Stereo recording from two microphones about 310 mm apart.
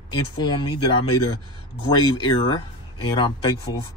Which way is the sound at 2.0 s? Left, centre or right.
Centre.